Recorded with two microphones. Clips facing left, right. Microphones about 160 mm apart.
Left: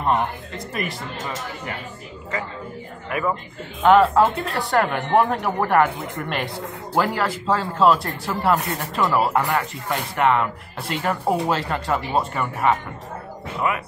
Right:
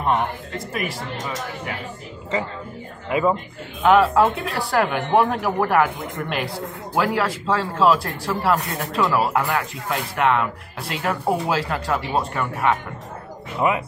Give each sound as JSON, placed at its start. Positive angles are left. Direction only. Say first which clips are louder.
{"t": 0.0, "sound": "speech", "louder": "even", "side_deg": 0}
{"t": 3.1, "sound": "speech", "louder": "right 4 dB", "side_deg": -20}
{"t": 3.8, "sound": "speech", "louder": "left 1 dB", "side_deg": 0}